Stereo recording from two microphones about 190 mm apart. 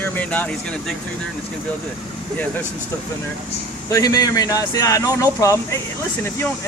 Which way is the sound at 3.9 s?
20° left (ahead or behind).